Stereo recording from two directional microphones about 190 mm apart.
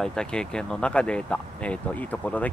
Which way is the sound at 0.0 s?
5° left (ahead or behind).